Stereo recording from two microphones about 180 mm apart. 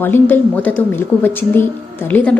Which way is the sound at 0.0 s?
10° left (ahead or behind).